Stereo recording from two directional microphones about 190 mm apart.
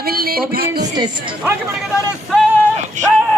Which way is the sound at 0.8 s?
20° right (ahead or behind).